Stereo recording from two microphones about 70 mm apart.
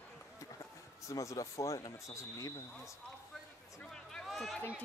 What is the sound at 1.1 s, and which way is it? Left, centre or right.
Speech, left.